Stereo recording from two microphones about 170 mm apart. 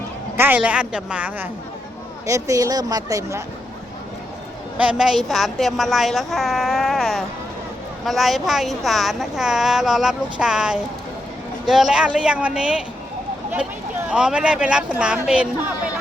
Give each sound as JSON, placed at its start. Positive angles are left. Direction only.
{"t": 0.3, "sound": "a woman's voice", "side_deg": -10}
{"t": 2.2, "sound": "speech", "side_deg": -20}
{"t": 4.8, "sound": "a woman's voice", "side_deg": -5}
{"t": 14.1, "sound": "speech", "side_deg": -5}